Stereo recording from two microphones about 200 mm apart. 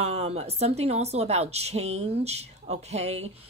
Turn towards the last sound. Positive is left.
turn(degrees=-30)  # may be behind; listen again after turning